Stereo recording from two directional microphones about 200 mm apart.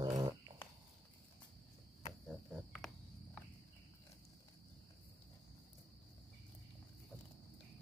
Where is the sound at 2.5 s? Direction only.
Centre (ahead or behind).